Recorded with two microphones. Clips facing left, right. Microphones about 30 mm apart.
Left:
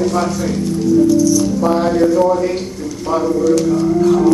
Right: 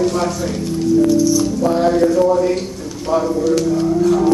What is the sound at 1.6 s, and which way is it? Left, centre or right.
Music, centre.